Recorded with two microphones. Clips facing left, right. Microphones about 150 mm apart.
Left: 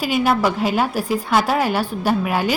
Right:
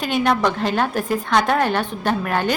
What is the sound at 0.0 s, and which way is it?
A woman's voice, 5° left (ahead or behind).